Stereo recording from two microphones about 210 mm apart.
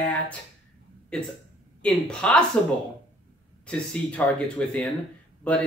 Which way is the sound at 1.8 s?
5° left (ahead or behind).